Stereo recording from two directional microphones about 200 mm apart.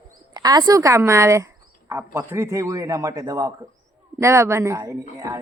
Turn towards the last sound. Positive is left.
turn(degrees=-15)  # may be behind; listen again after turning